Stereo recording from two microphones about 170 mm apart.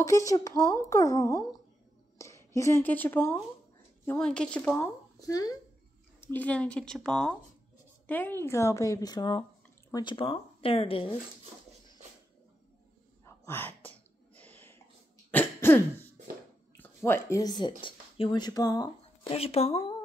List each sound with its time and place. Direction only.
0.0 s a woman's voice: 20° left (ahead or behind)
5.3 s a woman's voice: 20° left (ahead or behind)
6.2 s a woman's voice: 10° left (ahead or behind); by 11.1 s 35° left (ahead or behind)
13.2 s a sound: 10° left (ahead or behind)
15.3 s throat clearing: 10° left (ahead or behind)
16.7 s speech: 10° left (ahead or behind)
19.3 s speech: 35° left (ahead or behind)